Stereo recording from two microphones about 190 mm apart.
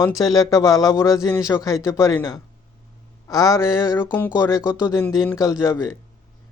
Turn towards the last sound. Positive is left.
turn(degrees=15)  # may be behind; listen again after turning